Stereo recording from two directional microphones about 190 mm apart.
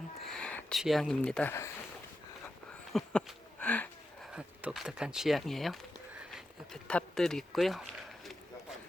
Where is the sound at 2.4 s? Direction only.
5° left (ahead or behind).